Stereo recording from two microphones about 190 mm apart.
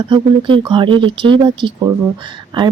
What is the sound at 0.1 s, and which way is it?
Speech, 25° right (ahead or behind).